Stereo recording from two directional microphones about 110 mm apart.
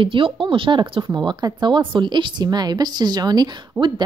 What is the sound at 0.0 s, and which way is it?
A woman's voice, 50° right (ahead or behind).